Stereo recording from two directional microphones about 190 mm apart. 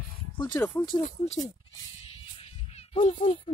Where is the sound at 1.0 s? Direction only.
35° left (ahead or behind).